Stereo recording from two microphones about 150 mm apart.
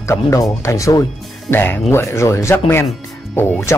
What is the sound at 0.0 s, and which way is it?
Speech, 20° left (ahead or behind).